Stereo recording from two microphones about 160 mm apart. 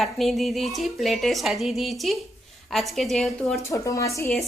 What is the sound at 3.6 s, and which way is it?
Speech, 20° left (ahead or behind).